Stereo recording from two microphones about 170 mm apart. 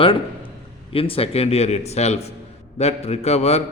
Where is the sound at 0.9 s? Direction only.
35° left (ahead or behind).